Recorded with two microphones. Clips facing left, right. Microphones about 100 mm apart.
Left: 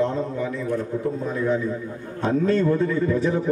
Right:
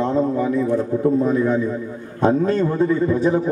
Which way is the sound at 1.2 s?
45° right (ahead or behind).